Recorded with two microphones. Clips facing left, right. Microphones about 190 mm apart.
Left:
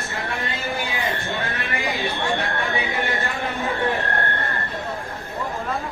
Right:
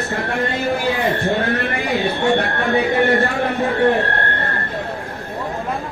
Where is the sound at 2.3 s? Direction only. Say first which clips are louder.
Right 7 dB; 60° right (ahead or behind).